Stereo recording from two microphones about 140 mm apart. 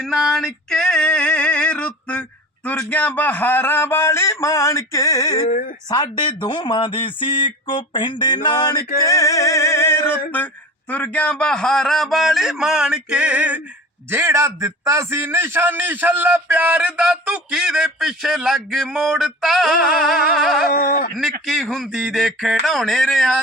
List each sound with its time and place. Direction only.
0.0 s male singing: centre (ahead or behind)
2.6 s a man's voice: 10° left (ahead or behind); by 5.5 s 25° left (ahead or behind)
5.5 s speech: 75° left (ahead or behind)
5.9 s a man's voice: 35° left (ahead or behind); by 20.7 s centre (ahead or behind)
20.7 s speech: 90° left
21.4 s a man's voice: centre (ahead or behind)